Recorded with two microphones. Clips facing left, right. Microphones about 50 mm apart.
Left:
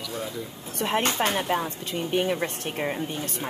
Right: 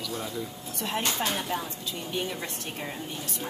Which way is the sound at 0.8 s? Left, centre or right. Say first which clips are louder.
Left 5 dB; left.